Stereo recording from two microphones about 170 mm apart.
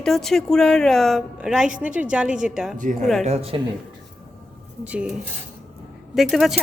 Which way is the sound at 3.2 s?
40° right (ahead or behind).